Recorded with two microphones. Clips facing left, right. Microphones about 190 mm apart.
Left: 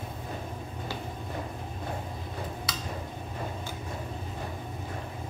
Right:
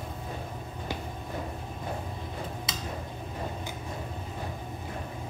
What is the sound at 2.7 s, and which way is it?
Tick-tock, 20° right (ahead or behind).